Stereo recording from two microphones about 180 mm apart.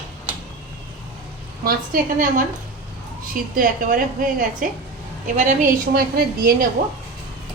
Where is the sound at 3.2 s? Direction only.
50° right (ahead or behind).